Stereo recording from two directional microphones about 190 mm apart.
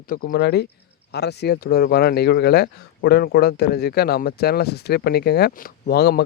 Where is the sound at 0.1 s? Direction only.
50° left (ahead or behind).